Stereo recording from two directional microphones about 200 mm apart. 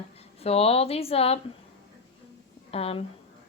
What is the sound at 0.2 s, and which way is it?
A woman's voice, 30° left (ahead or behind).